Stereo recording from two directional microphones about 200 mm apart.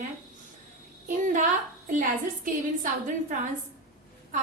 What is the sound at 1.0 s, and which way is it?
A woman's voice, 40° right (ahead or behind).